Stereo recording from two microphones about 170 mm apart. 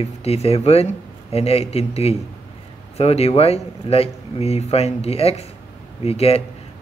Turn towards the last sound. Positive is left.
turn(degrees=35)  # may be behind; listen again after turning